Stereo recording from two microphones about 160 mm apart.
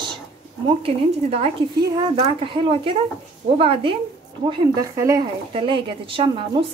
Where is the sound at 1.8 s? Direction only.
25° right (ahead or behind).